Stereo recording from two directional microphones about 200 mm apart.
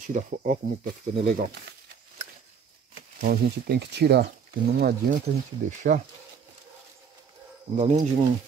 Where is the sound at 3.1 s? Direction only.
50° right (ahead or behind).